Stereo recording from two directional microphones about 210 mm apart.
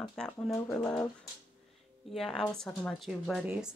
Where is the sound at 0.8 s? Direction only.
20° left (ahead or behind).